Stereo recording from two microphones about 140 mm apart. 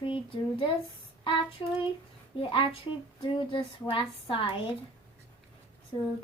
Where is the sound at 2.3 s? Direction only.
40° left (ahead or behind).